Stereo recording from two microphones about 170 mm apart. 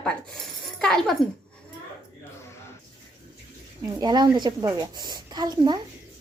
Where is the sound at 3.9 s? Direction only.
25° right (ahead or behind).